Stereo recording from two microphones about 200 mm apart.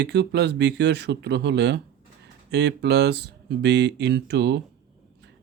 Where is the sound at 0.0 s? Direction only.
55° right (ahead or behind).